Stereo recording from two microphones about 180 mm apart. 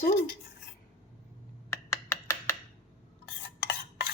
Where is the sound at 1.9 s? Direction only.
20° left (ahead or behind).